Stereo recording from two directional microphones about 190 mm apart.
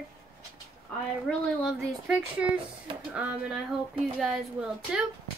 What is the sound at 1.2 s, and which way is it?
A woman's voice, centre (ahead or behind).